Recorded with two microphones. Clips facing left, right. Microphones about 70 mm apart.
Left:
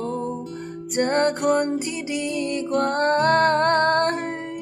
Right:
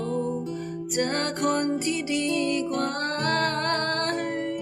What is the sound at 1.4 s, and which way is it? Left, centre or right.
Music, centre.